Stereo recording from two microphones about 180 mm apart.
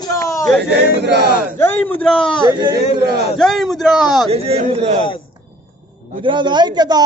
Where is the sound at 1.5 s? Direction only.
10° left (ahead or behind).